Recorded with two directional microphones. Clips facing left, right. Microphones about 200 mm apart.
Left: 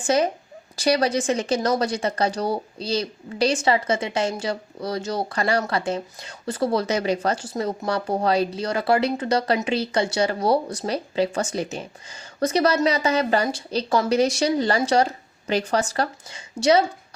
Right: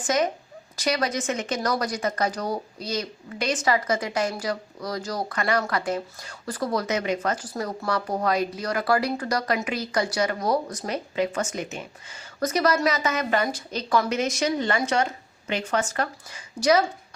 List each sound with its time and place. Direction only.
0.0 s a woman's voice: 30° left (ahead or behind)